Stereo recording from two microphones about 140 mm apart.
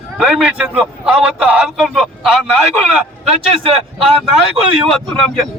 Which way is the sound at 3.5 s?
40° right (ahead or behind).